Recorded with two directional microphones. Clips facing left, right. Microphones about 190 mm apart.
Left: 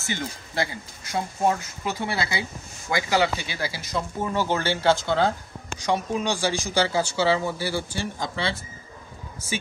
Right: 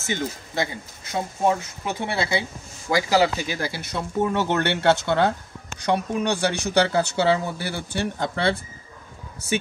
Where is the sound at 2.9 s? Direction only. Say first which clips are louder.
Right 3 dB; 40° right (ahead or behind).